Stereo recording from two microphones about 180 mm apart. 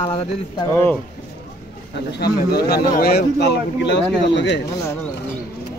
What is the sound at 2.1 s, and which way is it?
A man's voice, 60° left (ahead or behind).